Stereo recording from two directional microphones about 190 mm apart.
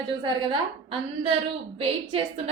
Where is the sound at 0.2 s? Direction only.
25° right (ahead or behind).